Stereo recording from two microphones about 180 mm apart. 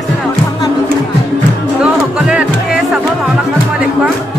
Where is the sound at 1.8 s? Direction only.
5° right (ahead or behind).